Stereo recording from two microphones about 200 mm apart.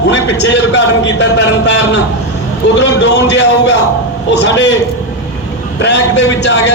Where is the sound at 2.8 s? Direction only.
60° left (ahead or behind).